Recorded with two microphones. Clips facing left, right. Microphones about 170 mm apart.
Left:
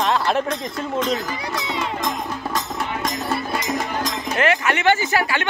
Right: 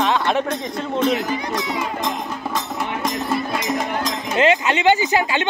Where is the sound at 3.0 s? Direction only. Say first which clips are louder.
Right 4 dB; centre (ahead or behind).